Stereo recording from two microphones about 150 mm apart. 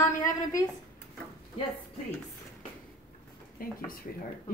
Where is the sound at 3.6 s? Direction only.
75° left (ahead or behind).